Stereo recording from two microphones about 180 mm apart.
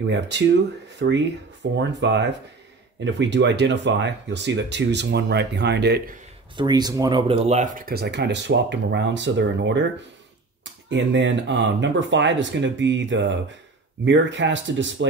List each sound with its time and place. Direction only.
0.0 s speech: 75° right (ahead or behind)
6.5 s speech: 25° right (ahead or behind); by 15.0 s 90° right